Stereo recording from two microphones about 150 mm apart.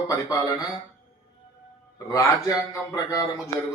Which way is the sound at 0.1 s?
20° left (ahead or behind).